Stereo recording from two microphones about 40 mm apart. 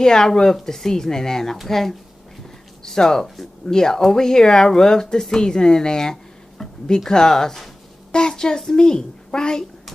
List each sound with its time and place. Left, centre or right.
0.0 s speech: centre
6.6 s a sound: centre
7.0 s a woman's voice: centre